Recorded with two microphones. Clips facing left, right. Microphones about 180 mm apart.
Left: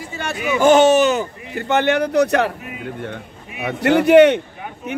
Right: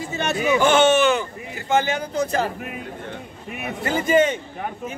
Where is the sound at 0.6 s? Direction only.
40° left (ahead or behind).